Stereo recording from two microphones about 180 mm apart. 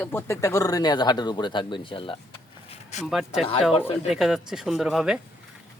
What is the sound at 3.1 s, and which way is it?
Speech, centre (ahead or behind).